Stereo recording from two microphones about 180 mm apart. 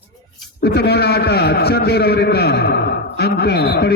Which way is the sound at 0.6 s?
65° left (ahead or behind).